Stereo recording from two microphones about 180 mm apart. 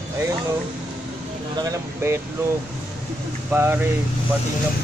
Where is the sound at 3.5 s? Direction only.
15° right (ahead or behind).